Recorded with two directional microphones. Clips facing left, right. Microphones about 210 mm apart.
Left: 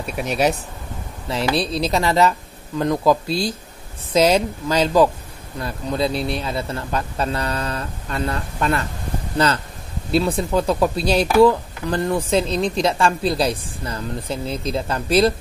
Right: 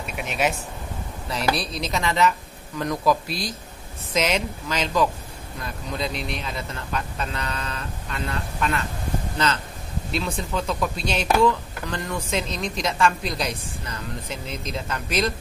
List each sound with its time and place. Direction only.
0.0 s speech: 40° left (ahead or behind)
10.1 s speech: 35° left (ahead or behind)